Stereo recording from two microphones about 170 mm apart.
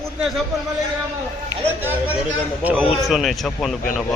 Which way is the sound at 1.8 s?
10° right (ahead or behind).